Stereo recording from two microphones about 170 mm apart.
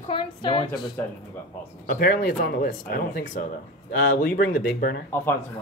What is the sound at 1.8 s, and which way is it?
Speech, 60° left (ahead or behind).